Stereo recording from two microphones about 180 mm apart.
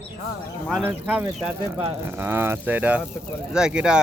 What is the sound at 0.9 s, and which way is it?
Speech, 10° right (ahead or behind).